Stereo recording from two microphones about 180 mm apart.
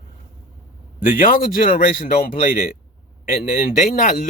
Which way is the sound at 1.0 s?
50° left (ahead or behind).